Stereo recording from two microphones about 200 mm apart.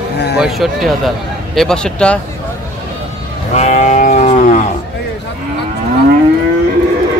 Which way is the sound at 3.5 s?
35° left (ahead or behind).